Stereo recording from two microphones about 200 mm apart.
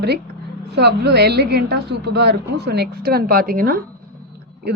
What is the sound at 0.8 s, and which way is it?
A woman's voice, 55° right (ahead or behind).